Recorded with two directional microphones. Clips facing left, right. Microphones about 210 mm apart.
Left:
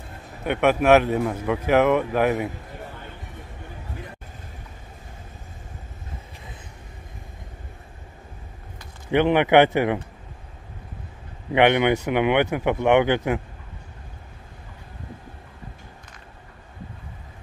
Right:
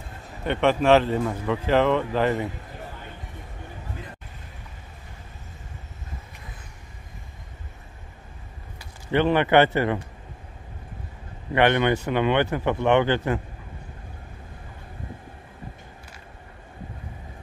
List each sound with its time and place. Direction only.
0.5 s speech: 10° left (ahead or behind)
9.1 s speech: 15° left (ahead or behind)
11.5 s speech: 15° left (ahead or behind)